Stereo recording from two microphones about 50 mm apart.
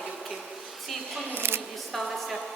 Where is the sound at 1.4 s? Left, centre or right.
Right.